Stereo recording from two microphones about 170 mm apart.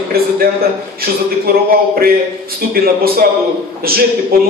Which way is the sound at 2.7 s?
60° right (ahead or behind).